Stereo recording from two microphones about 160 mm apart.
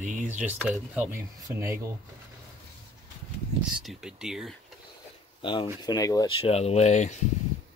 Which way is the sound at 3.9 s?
5° right (ahead or behind).